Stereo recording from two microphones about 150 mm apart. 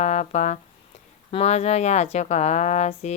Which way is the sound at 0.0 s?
50° left (ahead or behind).